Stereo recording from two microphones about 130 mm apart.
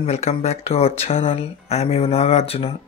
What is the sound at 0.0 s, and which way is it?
Speech, 55° left (ahead or behind).